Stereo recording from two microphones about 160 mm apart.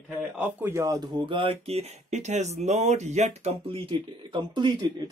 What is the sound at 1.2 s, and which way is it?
Speech, 30° right (ahead or behind).